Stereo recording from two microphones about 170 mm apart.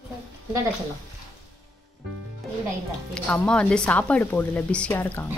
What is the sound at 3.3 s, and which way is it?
Speech, 5° left (ahead or behind).